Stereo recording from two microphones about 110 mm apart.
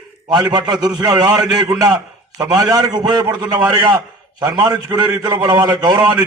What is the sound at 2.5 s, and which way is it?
A man's voice, 35° right (ahead or behind).